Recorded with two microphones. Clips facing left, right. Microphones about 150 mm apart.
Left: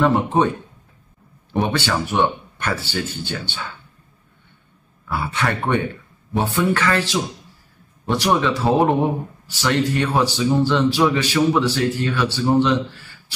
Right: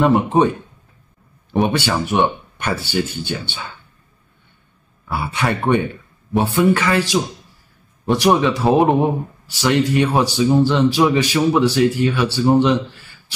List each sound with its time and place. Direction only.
0.0 s a man's voice: 15° right (ahead or behind)
1.5 s a man's voice: 15° right (ahead or behind)
5.0 s a man's voice: 15° right (ahead or behind)